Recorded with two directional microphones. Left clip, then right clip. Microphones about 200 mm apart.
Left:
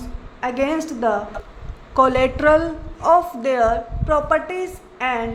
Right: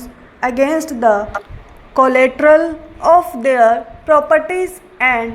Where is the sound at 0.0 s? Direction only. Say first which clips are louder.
Right 6 dB; 25° right (ahead or behind).